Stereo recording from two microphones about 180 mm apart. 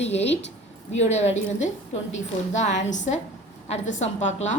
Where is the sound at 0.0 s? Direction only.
35° left (ahead or behind).